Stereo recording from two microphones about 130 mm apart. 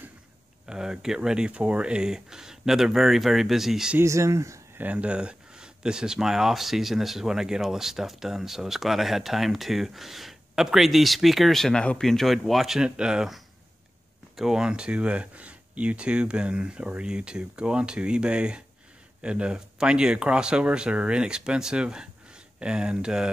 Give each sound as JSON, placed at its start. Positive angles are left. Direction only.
{"t": 0.7, "sound": "speech", "side_deg": -5}
{"t": 4.0, "sound": "speech", "side_deg": -20}
{"t": 4.8, "sound": "speech", "side_deg": -10}